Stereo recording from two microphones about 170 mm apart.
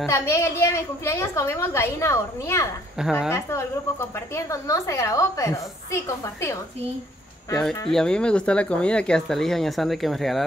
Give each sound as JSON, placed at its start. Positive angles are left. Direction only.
{"t": 0.0, "sound": "a woman's voice", "side_deg": 15}
{"t": 3.0, "sound": "speech", "side_deg": -5}
{"t": 3.3, "sound": "a woman's voice", "side_deg": 15}
{"t": 7.5, "sound": "speech", "side_deg": 5}